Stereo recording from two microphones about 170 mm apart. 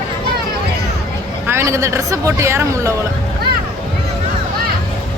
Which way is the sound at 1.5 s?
15° right (ahead or behind).